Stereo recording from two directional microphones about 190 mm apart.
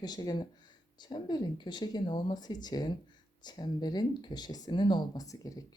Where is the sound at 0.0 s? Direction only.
20° left (ahead or behind).